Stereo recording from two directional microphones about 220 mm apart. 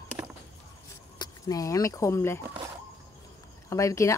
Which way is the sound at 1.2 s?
15° left (ahead or behind).